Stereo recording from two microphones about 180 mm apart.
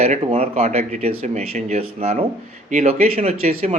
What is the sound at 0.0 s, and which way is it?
Speech, 35° right (ahead or behind).